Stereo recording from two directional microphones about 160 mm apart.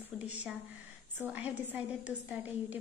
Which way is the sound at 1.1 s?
10° right (ahead or behind).